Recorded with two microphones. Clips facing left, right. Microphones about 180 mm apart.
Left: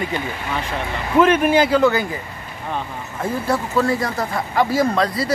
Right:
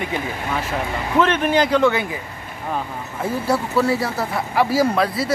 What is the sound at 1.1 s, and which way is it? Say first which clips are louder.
Speech: left 3 dB; 10° left (ahead or behind).